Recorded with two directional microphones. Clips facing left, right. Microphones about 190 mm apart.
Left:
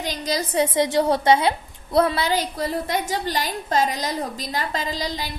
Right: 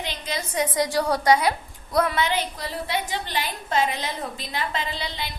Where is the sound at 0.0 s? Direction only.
40° left (ahead or behind).